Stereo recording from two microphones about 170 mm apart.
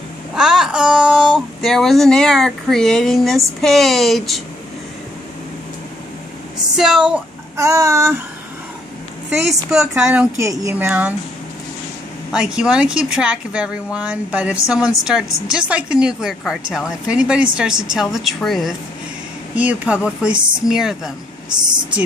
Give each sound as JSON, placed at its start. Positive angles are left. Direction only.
{"t": 0.3, "sound": "speech", "side_deg": -5}
{"t": 6.8, "sound": "speech", "side_deg": -5}
{"t": 7.5, "sound": "speech", "side_deg": -15}
{"t": 9.3, "sound": "speech", "side_deg": -5}
{"t": 10.4, "sound": "speech", "side_deg": -20}
{"t": 12.3, "sound": "speech", "side_deg": -5}